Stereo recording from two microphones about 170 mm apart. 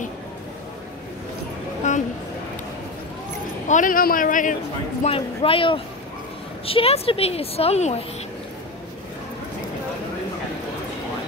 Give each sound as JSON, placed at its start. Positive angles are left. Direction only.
{"t": 1.8, "sound": "a sound", "side_deg": 45}
{"t": 3.6, "sound": "speech", "side_deg": 50}
{"t": 5.0, "sound": "a woman's voice", "side_deg": 35}